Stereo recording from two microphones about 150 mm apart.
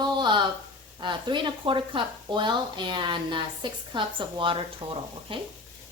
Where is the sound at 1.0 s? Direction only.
30° right (ahead or behind).